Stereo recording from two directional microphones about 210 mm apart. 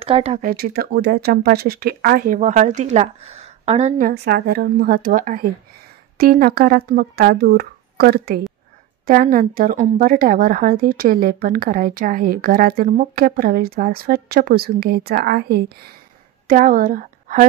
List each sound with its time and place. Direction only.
0.0 s speech: 30° right (ahead or behind)
4.1 s a woman's voice: 50° right (ahead or behind)